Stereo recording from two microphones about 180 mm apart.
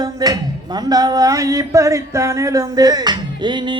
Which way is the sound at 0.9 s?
20° right (ahead or behind).